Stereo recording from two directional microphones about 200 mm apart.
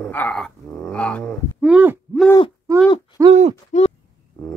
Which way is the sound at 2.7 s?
15° right (ahead or behind).